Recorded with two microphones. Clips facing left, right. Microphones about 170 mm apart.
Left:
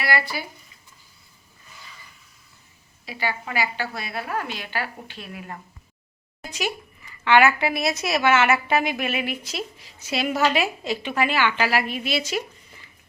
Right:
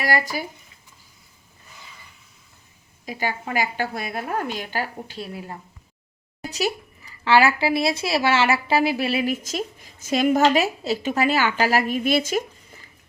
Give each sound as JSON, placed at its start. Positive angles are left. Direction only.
{"t": 0.0, "sound": "speech", "side_deg": -45}
{"t": 3.1, "sound": "a woman's voice", "side_deg": -45}